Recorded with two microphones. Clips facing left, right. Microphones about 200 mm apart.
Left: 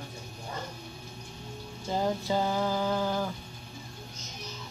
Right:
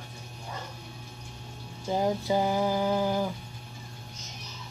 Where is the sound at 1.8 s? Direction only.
15° right (ahead or behind).